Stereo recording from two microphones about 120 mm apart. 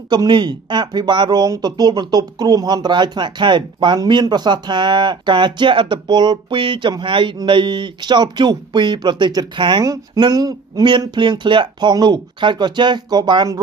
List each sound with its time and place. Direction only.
0.1 s speech: 40° right (ahead or behind)